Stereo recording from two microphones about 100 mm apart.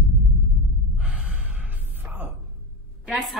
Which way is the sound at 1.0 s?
15° right (ahead or behind).